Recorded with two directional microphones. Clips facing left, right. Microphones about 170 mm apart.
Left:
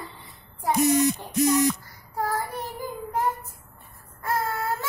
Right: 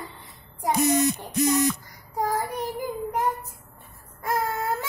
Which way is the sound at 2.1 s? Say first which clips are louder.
Right 2 dB; 15° right (ahead or behind).